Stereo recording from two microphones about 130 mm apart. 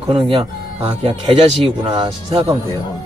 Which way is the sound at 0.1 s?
40° right (ahead or behind).